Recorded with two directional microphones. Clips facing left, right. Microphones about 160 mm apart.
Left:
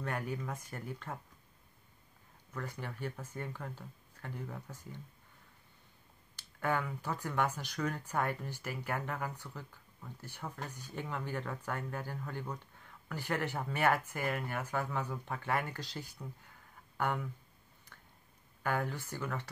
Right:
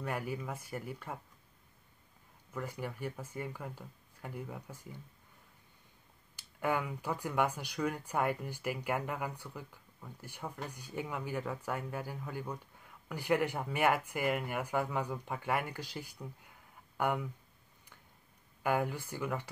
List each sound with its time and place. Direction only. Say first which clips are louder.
0.0 s speech: right 1 dB; 10° right (ahead or behind)
2.5 s speech: right 2 dB; 10° right (ahead or behind)
6.3 s speech: right 1 dB; 10° right (ahead or behind)
18.6 s speech: right 3 dB; 10° right (ahead or behind)